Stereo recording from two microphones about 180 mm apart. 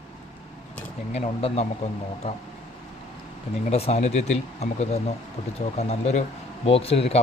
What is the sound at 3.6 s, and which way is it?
Speech, 35° left (ahead or behind).